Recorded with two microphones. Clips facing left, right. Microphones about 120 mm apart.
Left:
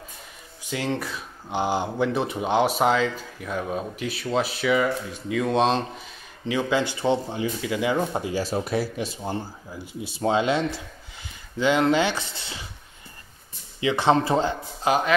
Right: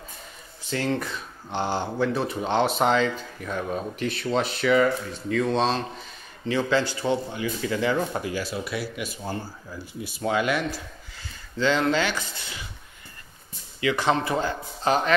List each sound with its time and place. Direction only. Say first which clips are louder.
0.7 s speech: right 1 dB; 10° left (ahead or behind); by 7.5 s 25° left (ahead or behind)
7.6 s speech: even; 10° left (ahead or behind)
8.5 s speech: left 5 dB; 40° left (ahead or behind); by 12.6 s 25° left (ahead or behind)
13.7 s speech: left 3 dB; 25° left (ahead or behind)
14.9 s speech: left 1 dB; 5° left (ahead or behind)